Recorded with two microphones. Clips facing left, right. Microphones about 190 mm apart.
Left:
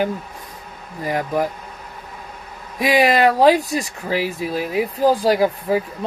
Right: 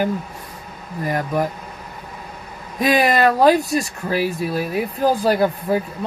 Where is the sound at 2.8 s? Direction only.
10° left (ahead or behind).